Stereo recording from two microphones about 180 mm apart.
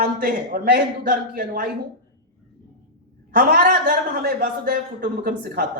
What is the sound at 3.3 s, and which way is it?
Speech, 50° right (ahead or behind).